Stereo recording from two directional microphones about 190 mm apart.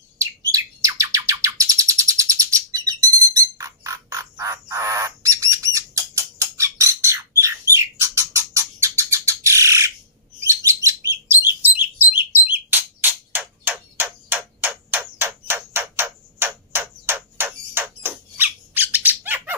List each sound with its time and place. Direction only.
0.2 s bird: 15° right (ahead or behind)
10.4 s chirp: 15° right (ahead or behind)
12.4 s a sound: 10° right (ahead or behind)